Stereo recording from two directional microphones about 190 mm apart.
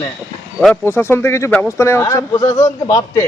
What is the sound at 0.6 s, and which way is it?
Speech, 10° left (ahead or behind).